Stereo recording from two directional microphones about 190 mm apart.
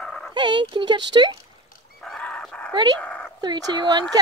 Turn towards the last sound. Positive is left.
turn(degrees=-20)  # may be behind; listen again after turning